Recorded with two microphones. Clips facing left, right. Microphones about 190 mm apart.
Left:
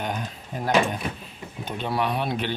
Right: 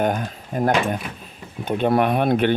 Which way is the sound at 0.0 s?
50° right (ahead or behind).